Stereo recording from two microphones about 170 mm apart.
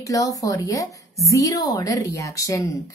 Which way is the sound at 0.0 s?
20° left (ahead or behind).